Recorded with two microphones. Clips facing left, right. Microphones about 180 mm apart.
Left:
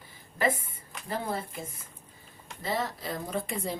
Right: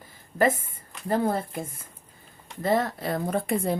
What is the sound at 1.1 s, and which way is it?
A woman's voice, 50° right (ahead or behind).